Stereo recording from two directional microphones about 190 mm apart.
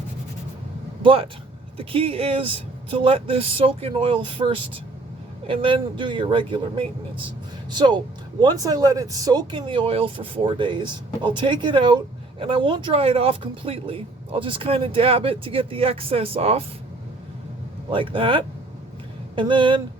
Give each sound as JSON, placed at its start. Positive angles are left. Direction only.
{"t": 1.0, "sound": "speech", "side_deg": -30}
{"t": 17.9, "sound": "speech", "side_deg": -25}